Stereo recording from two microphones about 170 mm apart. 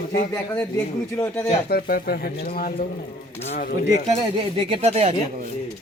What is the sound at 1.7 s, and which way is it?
Speech, 60° left (ahead or behind).